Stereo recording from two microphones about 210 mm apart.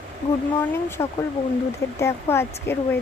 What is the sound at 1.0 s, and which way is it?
Speech, 15° left (ahead or behind).